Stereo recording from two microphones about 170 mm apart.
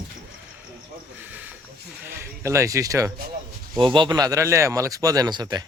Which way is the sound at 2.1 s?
15° right (ahead or behind).